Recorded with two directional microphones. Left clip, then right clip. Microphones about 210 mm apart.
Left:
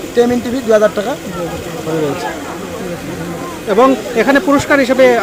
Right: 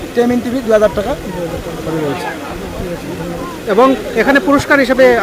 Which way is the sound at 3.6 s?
Centre (ahead or behind).